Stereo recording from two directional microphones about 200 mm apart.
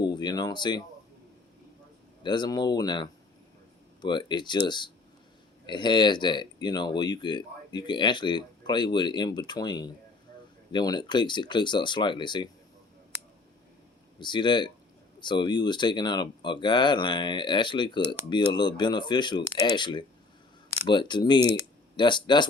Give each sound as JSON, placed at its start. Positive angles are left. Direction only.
{"t": 0.0, "sound": "speech", "side_deg": 20}
{"t": 2.2, "sound": "speech", "side_deg": 20}
{"t": 14.2, "sound": "speech", "side_deg": 20}